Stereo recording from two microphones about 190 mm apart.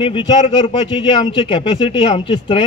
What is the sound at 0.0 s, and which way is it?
A man's voice, 25° left (ahead or behind).